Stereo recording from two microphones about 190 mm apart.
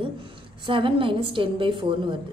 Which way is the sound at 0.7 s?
25° right (ahead or behind).